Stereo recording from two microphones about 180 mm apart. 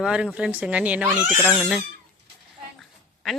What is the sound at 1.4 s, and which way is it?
Speech, 5° left (ahead or behind).